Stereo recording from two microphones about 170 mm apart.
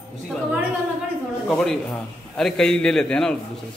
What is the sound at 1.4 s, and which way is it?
A man's voice, centre (ahead or behind).